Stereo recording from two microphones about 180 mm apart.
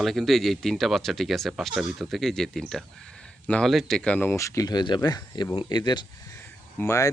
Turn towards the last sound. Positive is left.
turn(degrees=15)  # may be behind; listen again after turning